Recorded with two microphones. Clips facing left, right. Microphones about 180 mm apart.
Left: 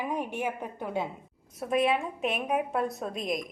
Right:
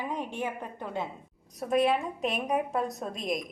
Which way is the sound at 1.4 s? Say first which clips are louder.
Right 1 dB; centre (ahead or behind).